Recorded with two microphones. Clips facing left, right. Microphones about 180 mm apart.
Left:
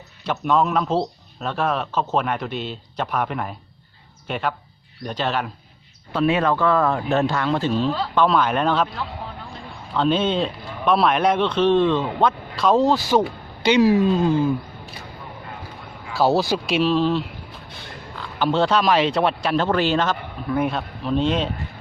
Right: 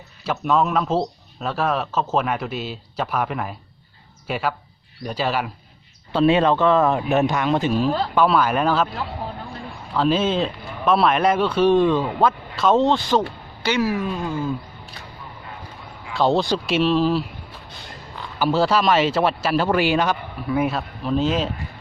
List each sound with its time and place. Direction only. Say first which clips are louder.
0.3 s speech: even; 5° right (ahead or behind)
6.1 s speech: right 3 dB; 30° right (ahead or behind); by 8.9 s 5° right (ahead or behind)
9.9 s speech: even; 5° right (ahead or behind); by 14.5 s 25° left (ahead or behind)
16.1 s speech: even; 5° left (ahead or behind)